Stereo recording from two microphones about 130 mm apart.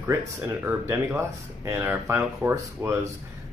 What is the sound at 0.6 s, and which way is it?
Speech, 20° right (ahead or behind).